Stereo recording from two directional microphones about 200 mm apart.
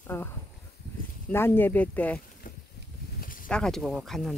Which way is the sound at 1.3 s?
10° left (ahead or behind).